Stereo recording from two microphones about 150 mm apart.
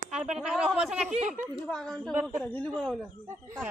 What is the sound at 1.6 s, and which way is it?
A woman's voice, 5° left (ahead or behind).